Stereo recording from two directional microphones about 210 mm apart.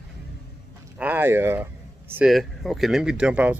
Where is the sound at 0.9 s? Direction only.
10° right (ahead or behind).